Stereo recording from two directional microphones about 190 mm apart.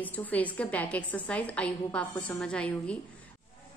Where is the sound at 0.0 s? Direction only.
10° left (ahead or behind).